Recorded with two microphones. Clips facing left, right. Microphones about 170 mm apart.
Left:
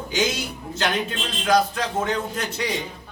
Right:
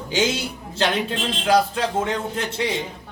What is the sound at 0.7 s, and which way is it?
Speech, 30° right (ahead or behind).